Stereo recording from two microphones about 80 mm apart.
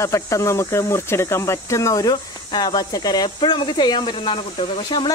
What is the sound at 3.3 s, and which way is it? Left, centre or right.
Speech, left.